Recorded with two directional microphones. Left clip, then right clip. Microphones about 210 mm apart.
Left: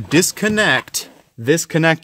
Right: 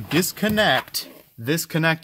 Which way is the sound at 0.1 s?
55° left (ahead or behind).